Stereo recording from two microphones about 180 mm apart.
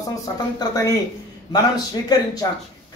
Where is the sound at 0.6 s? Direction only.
20° left (ahead or behind).